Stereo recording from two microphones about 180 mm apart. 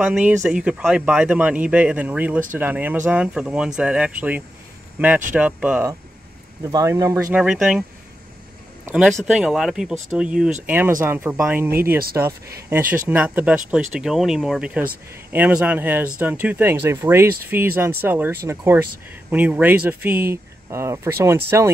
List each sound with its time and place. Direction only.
0.0 s speech: 10° right (ahead or behind)
6.6 s speech: 20° right (ahead or behind)
7.3 s speech: centre (ahead or behind)
8.8 s speech: 5° right (ahead or behind)